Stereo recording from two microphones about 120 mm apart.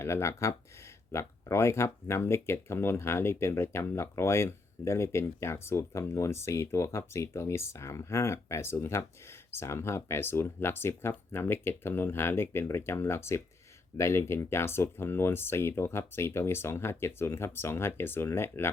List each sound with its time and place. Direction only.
0.0 s speech: 20° left (ahead or behind)